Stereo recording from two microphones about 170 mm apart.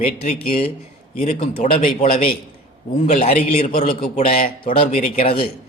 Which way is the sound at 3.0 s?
40° left (ahead or behind).